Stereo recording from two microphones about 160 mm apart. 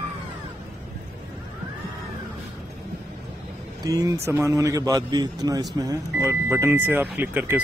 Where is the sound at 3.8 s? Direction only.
20° right (ahead or behind).